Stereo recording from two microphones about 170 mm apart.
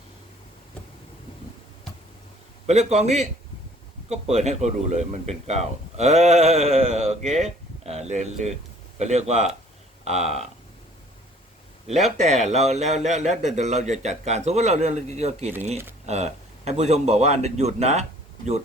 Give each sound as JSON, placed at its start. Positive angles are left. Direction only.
{"t": 2.6, "sound": "speech", "side_deg": -40}
{"t": 11.9, "sound": "speech", "side_deg": -40}